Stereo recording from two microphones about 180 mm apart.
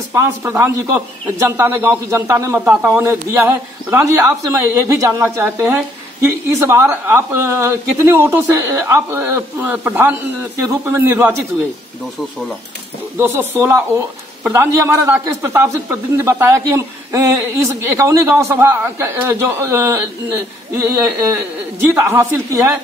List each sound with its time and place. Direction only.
0.1 s a man's voice: 15° right (ahead or behind)
13.2 s a man's voice: 10° right (ahead or behind)